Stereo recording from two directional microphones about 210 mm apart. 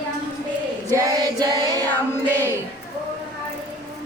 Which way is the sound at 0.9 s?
15° right (ahead or behind).